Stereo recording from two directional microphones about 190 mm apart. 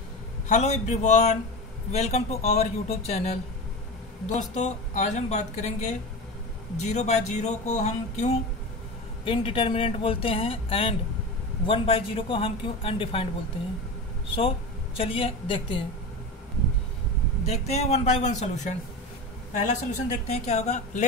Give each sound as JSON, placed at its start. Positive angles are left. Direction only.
{"t": 0.5, "sound": "speech", "side_deg": 35}
{"t": 15.0, "sound": "speech", "side_deg": 30}
{"t": 17.5, "sound": "speech", "side_deg": 35}